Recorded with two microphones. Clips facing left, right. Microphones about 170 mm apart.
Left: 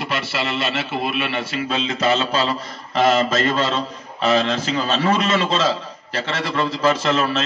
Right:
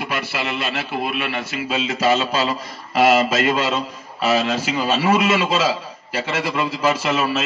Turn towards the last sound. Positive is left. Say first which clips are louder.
# left 1 dB
turn(degrees=-10)  # may be behind; listen again after turning